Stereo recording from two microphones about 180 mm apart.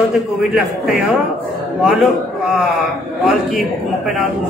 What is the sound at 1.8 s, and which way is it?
Speech, centre (ahead or behind).